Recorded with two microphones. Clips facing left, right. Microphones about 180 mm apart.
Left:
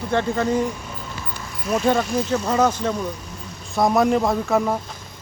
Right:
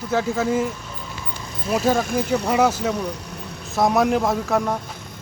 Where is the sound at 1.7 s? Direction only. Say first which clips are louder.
Even; 5° right (ahead or behind).